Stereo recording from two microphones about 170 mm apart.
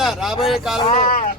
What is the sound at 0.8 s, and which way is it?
Speech, 30° left (ahead or behind).